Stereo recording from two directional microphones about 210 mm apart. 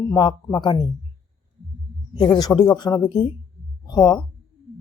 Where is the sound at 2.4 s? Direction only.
20° left (ahead or behind).